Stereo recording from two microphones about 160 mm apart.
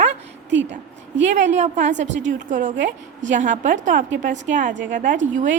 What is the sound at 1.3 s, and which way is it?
A woman's voice, 45° right (ahead or behind).